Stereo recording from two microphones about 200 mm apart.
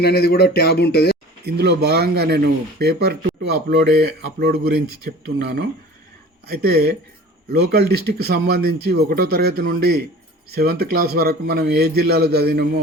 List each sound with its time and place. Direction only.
0.0 s speech: 55° left (ahead or behind)
1.5 s speech: 55° right (ahead or behind)